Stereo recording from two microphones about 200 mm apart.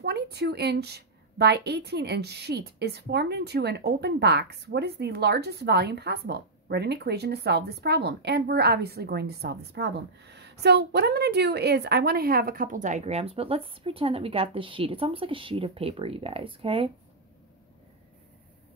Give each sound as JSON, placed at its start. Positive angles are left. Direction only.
{"t": 0.0, "sound": "a woman's voice", "side_deg": -55}